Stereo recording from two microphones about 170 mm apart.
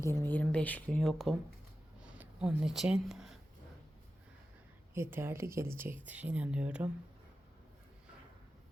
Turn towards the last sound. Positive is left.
turn(degrees=-5)  # may be behind; listen again after turning